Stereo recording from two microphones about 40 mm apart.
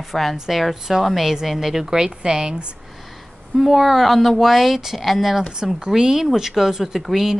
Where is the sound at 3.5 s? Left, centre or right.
Centre.